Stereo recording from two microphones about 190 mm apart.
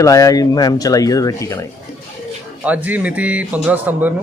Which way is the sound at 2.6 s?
10° right (ahead or behind).